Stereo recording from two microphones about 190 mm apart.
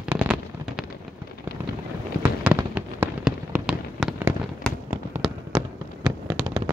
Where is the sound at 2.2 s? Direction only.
10° right (ahead or behind).